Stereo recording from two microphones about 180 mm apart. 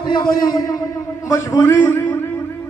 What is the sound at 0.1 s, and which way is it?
A man's voice, 25° left (ahead or behind).